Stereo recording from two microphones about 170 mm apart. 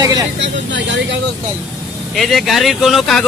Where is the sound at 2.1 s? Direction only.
Centre (ahead or behind).